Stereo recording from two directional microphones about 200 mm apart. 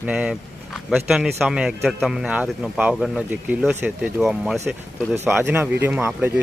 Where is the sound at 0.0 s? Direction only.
5° right (ahead or behind).